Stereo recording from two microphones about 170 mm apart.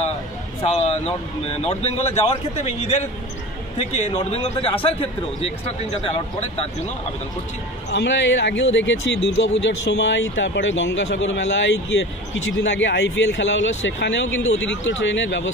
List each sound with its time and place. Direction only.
0.7 s speech: 40° left (ahead or behind)
7.9 s speech: 90° left